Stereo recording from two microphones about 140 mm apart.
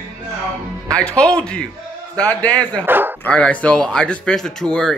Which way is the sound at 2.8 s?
15° right (ahead or behind).